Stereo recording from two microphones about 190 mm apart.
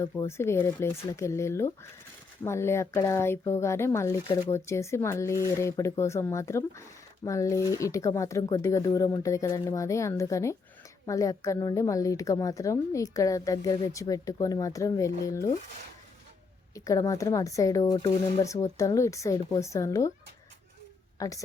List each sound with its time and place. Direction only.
0.0 s a woman's voice: 15° left (ahead or behind)
16.7 s a woman's voice: 15° left (ahead or behind)
21.2 s a woman's voice: 15° left (ahead or behind)